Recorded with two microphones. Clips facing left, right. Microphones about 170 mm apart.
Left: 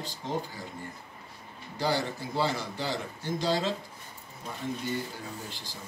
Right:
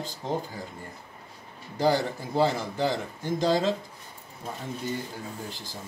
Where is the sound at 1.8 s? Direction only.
45° right (ahead or behind).